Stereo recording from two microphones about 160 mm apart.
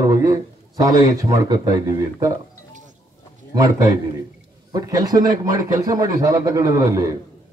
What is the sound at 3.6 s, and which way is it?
A man's voice, 20° right (ahead or behind).